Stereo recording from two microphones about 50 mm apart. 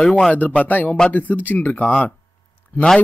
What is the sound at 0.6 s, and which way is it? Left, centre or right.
Speech, left.